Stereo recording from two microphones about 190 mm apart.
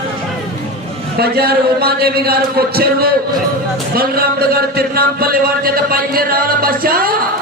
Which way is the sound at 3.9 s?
50° right (ahead or behind).